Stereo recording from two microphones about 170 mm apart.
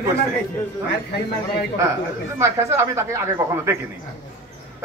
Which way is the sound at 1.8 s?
15° right (ahead or behind).